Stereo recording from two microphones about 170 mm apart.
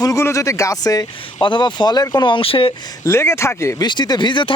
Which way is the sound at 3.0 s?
15° left (ahead or behind).